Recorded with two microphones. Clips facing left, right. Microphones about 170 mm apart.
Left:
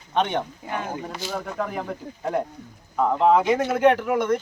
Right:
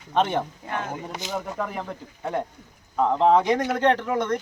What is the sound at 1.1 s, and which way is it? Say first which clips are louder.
Speech: even; 20° right (ahead or behind).